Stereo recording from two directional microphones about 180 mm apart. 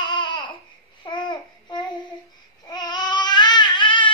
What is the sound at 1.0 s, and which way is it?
Babbling, 25° left (ahead or behind).